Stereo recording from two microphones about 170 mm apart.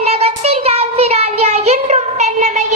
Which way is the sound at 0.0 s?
35° right (ahead or behind).